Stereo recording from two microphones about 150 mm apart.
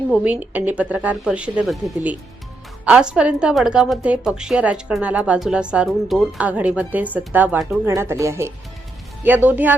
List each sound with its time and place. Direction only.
0.1 s a woman's voice: 10° right (ahead or behind)
2.8 s a woman's voice: 5° right (ahead or behind)